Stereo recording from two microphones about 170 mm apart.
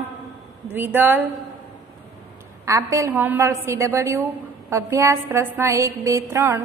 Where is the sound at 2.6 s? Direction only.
15° right (ahead or behind).